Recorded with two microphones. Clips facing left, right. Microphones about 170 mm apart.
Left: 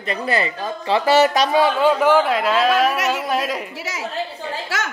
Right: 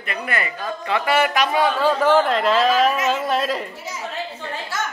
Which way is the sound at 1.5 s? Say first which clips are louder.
Left 3 dB; 20° left (ahead or behind).